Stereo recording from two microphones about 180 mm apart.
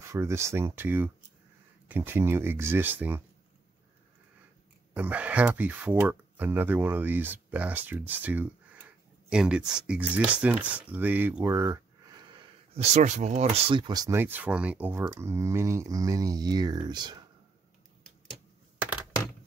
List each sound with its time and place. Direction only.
0.0 s speech: 15° right (ahead or behind)
4.9 s speech: 10° right (ahead or behind); by 13.5 s 40° right (ahead or behind)
13.6 s speech: 30° right (ahead or behind)
14.2 s speech: 10° right (ahead or behind)